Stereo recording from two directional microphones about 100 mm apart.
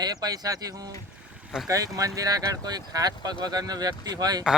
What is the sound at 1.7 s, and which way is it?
Speech, 35° right (ahead or behind).